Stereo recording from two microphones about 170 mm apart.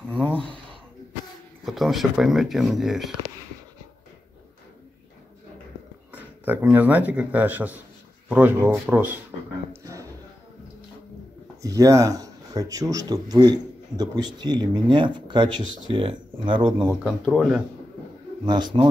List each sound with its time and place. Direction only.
1.7 s speech: centre (ahead or behind)
6.4 s speech: 10° right (ahead or behind)
11.6 s a man's voice: 20° right (ahead or behind)
17.0 s speech: centre (ahead or behind)
18.4 s a man's voice: 25° right (ahead or behind)